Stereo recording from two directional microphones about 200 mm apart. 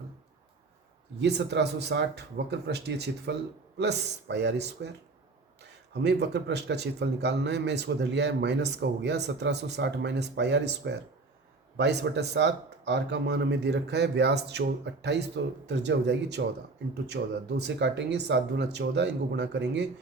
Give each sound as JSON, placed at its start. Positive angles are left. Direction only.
{"t": 1.2, "sound": "a man's voice", "side_deg": -60}